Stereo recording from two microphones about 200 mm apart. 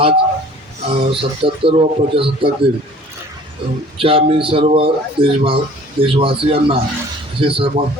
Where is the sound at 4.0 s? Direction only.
25° right (ahead or behind).